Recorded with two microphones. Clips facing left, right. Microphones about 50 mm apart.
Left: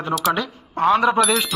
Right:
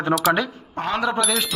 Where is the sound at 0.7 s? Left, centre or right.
Left.